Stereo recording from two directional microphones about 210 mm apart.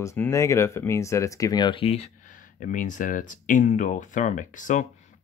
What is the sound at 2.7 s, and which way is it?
Speech, 40° left (ahead or behind).